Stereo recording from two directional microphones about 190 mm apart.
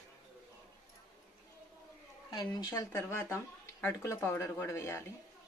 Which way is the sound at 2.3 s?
20° left (ahead or behind).